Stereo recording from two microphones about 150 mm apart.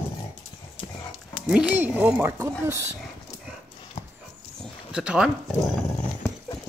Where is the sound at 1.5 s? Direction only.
5° right (ahead or behind).